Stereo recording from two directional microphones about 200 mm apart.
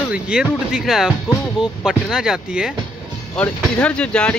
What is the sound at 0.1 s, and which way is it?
Speech, 5° right (ahead or behind).